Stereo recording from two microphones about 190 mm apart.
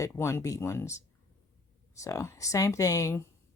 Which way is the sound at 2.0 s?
15° left (ahead or behind).